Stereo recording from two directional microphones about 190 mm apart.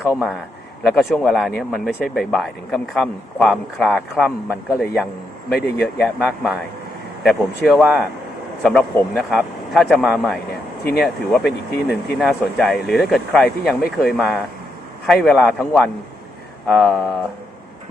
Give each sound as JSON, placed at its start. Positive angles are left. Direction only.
{"t": 0.0, "sound": "a man's voice", "side_deg": -5}
{"t": 5.5, "sound": "speech", "side_deg": 60}
{"t": 5.8, "sound": "speech", "side_deg": 5}
{"t": 10.5, "sound": "a sound", "side_deg": 55}
{"t": 11.0, "sound": "speech", "side_deg": 0}